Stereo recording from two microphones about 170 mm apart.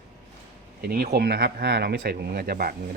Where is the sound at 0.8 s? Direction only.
65° right (ahead or behind).